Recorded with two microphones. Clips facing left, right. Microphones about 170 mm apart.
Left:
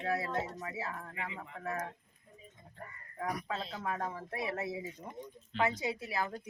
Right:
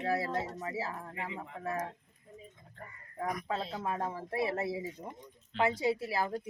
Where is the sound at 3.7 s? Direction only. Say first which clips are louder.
Right 2 dB; 25° right (ahead or behind).